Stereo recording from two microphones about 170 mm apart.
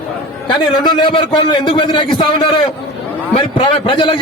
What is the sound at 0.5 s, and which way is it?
A man's voice, 25° left (ahead or behind).